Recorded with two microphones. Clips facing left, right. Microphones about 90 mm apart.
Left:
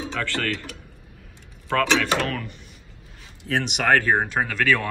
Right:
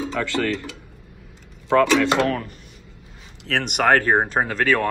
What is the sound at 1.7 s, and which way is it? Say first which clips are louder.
Speech: right 4 dB; 20° right (ahead or behind).